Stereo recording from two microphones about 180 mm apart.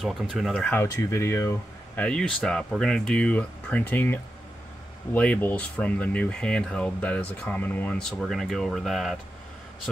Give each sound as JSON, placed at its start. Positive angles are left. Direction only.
{"t": 0.0, "sound": "speech", "side_deg": 0}